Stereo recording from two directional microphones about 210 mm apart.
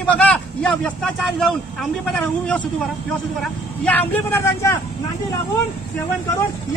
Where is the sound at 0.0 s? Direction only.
5° left (ahead or behind).